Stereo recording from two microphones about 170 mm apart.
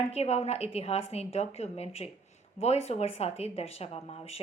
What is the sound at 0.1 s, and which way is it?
A woman's voice, 40° left (ahead or behind).